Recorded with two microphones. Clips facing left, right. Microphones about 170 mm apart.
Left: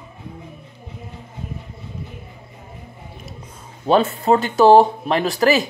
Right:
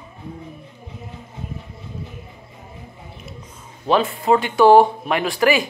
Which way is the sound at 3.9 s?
40° left (ahead or behind).